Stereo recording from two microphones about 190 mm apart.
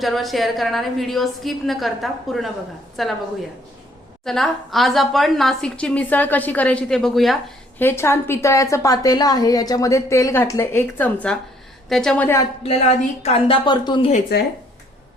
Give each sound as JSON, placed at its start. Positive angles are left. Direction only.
{"t": 0.0, "sound": "a woman's voice", "side_deg": 0}
{"t": 4.3, "sound": "a woman's voice", "side_deg": 0}
{"t": 7.8, "sound": "a woman's voice", "side_deg": 10}
{"t": 13.2, "sound": "speech", "side_deg": 30}
{"t": 14.3, "sound": "speech", "side_deg": 55}